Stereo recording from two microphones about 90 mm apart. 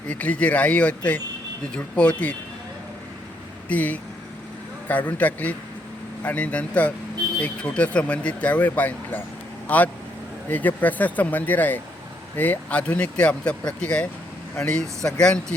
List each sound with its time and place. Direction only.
0.1 s speech: 15° left (ahead or behind)
3.7 s speech: 15° left (ahead or behind)